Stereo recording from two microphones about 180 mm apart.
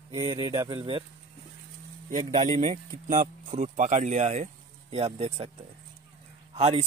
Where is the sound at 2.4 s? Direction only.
40° right (ahead or behind).